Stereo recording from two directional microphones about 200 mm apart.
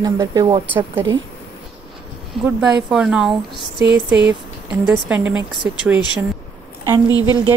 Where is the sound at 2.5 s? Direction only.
5° right (ahead or behind).